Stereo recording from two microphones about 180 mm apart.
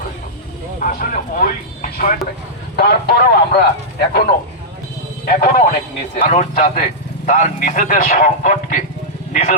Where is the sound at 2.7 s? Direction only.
60° left (ahead or behind).